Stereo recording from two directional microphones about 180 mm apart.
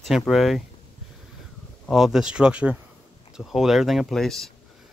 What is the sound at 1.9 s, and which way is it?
Speech, centre (ahead or behind).